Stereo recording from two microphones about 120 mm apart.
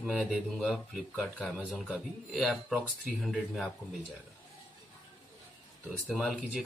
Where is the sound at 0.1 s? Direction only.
5° left (ahead or behind).